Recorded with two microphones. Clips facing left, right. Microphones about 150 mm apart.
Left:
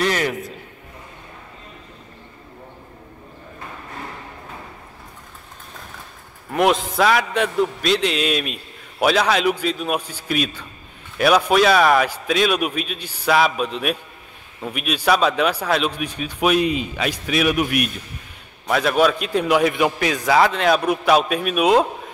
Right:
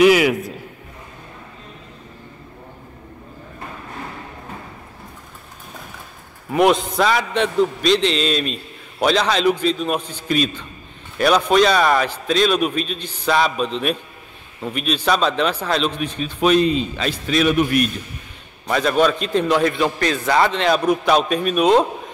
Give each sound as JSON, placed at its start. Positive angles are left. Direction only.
{"t": 0.0, "sound": "a man's voice", "side_deg": -10}
{"t": 6.5, "sound": "a man's voice", "side_deg": 0}